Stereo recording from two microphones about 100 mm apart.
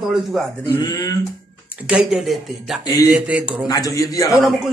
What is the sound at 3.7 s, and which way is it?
Speech, 35° left (ahead or behind).